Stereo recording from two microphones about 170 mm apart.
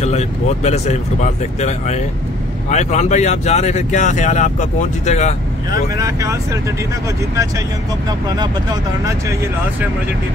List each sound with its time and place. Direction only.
0.0 s speech: 40° left (ahead or behind)
5.7 s speech: 20° right (ahead or behind)